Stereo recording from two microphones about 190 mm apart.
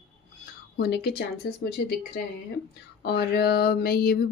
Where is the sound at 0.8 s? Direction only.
60° left (ahead or behind).